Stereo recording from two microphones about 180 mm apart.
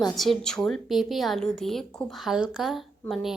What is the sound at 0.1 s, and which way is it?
A woman's voice, centre (ahead or behind).